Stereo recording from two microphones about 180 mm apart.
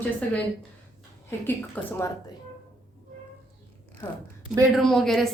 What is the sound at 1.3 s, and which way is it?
Speech, 15° left (ahead or behind).